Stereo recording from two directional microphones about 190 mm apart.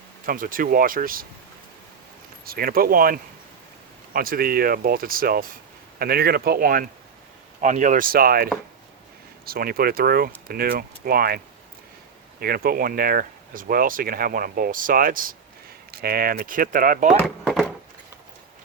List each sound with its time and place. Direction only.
0.3 s speech: 50° right (ahead or behind)
2.4 s speech: 50° right (ahead or behind)
9.5 s speech: 50° right (ahead or behind)
12.4 s speech: 50° right (ahead or behind)
17.2 s a sound: centre (ahead or behind)